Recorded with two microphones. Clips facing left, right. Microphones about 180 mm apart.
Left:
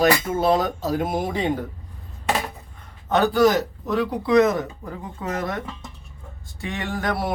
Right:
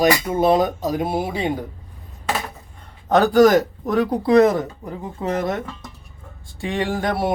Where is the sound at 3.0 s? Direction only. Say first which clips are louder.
Right 4 dB; 40° right (ahead or behind).